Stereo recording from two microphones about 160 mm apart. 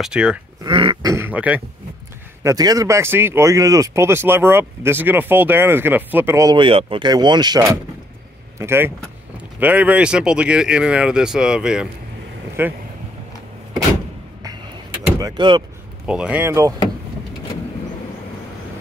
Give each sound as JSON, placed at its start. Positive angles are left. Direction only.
{"t": 0.0, "sound": "speech", "side_deg": -5}
{"t": 0.7, "sound": "a sound", "side_deg": -30}
{"t": 1.1, "sound": "speech", "side_deg": -10}
{"t": 2.4, "sound": "speech", "side_deg": -25}
{"t": 6.5, "sound": "speech", "side_deg": -35}
{"t": 15.1, "sound": "speech", "side_deg": -25}
{"t": 16.1, "sound": "speech", "side_deg": -5}